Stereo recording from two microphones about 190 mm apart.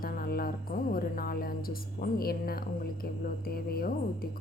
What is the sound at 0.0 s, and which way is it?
A woman's voice, 50° left (ahead or behind).